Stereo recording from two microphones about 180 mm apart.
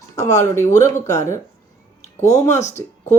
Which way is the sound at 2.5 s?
40° left (ahead or behind).